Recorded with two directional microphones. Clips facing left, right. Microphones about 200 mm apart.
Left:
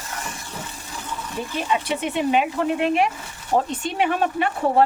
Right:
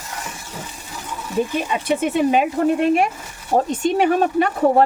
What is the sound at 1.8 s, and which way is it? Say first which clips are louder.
Speech: right 5 dB; 45° right (ahead or behind).